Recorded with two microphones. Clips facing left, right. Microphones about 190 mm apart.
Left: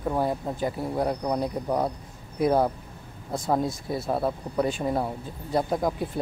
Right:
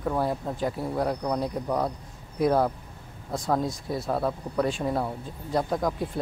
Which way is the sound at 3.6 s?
Centre (ahead or behind).